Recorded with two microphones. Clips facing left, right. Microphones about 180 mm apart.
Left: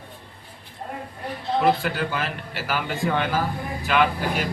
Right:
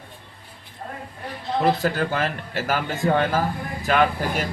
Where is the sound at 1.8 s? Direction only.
40° right (ahead or behind).